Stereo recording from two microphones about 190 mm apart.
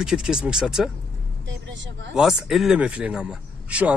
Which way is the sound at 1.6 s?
70° right (ahead or behind).